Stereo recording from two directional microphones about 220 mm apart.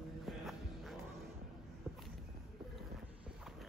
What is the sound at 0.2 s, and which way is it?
Music, centre (ahead or behind).